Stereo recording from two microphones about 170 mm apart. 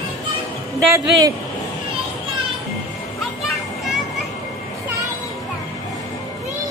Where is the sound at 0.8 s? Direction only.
20° right (ahead or behind).